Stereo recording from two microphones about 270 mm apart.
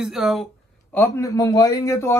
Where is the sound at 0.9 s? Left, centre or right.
Centre.